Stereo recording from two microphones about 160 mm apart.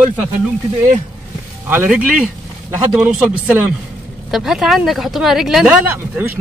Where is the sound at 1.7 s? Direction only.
10° right (ahead or behind).